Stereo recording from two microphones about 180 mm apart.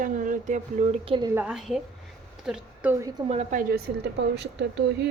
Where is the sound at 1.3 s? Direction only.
5° right (ahead or behind).